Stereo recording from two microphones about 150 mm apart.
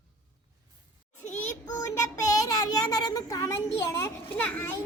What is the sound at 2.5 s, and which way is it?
A child's voice, 25° left (ahead or behind).